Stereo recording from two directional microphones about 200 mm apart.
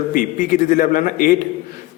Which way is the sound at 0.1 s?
45° left (ahead or behind).